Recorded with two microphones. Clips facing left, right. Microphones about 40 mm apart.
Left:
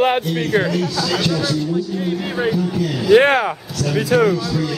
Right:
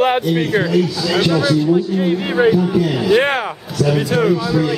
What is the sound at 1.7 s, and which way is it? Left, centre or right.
A man's voice, right.